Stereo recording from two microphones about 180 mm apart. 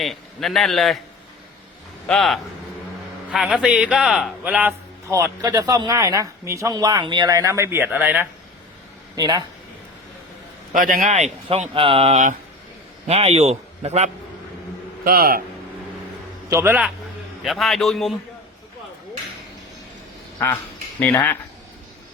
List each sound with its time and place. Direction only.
0.0 s a man's voice: centre (ahead or behind)
2.0 s a man's voice: centre (ahead or behind)
9.1 s speech: 20° right (ahead or behind)
10.8 s a man's voice: 50° right (ahead or behind)
15.0 s a man's voice: 55° right (ahead or behind)
16.5 s a man's voice: 15° right (ahead or behind)
21.0 s speech: 10° left (ahead or behind)